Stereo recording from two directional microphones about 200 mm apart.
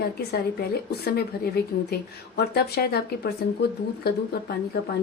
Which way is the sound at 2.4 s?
50° left (ahead or behind).